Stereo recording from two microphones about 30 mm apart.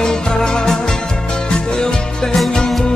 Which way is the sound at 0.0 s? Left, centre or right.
Left.